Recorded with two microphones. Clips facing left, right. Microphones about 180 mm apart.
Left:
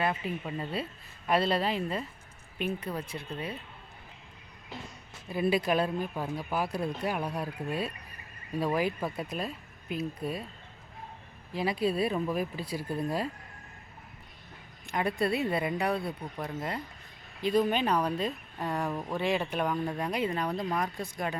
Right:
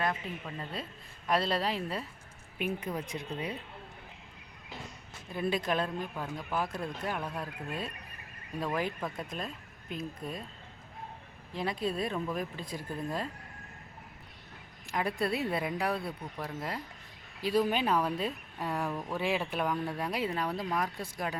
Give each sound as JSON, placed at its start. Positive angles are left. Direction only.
{"t": 0.0, "sound": "speech", "side_deg": 5}
{"t": 2.6, "sound": "speech", "side_deg": -10}
{"t": 5.3, "sound": "speech", "side_deg": 5}
{"t": 11.5, "sound": "speech", "side_deg": 5}
{"t": 14.8, "sound": "speech", "side_deg": 0}
{"t": 18.9, "sound": "speech", "side_deg": 10}
{"t": 19.1, "sound": "speech", "side_deg": -5}